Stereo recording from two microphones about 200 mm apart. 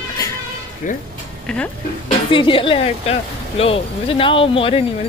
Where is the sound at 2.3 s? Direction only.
25° left (ahead or behind).